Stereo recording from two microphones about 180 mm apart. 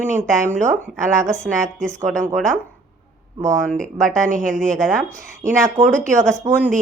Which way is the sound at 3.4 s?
45° right (ahead or behind).